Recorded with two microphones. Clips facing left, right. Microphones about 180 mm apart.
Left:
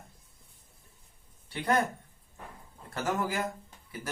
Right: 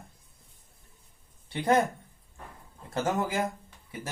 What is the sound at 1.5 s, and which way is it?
Speech, 25° right (ahead or behind).